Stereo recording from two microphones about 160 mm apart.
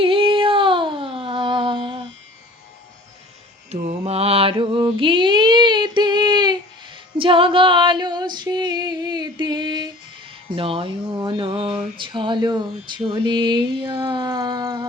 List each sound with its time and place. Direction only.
0.0 s a sound: 35° right (ahead or behind)
3.7 s mantra: 40° right (ahead or behind)
7.2 s female singing: 35° right (ahead or behind)
10.5 s speech: 35° right (ahead or behind)
11.9 s mantra: 30° right (ahead or behind)